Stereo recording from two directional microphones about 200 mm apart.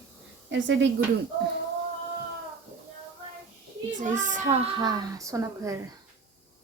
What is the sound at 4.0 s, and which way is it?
Speech, 40° right (ahead or behind).